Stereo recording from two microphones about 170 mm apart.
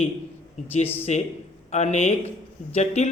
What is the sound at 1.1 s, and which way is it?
Speech, 40° left (ahead or behind).